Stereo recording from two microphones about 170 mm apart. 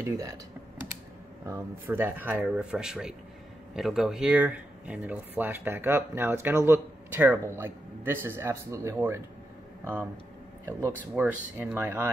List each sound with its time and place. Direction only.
0.0 s speech: 20° right (ahead or behind)
1.4 s speech: 15° right (ahead or behind)
11.1 s speech: 10° right (ahead or behind)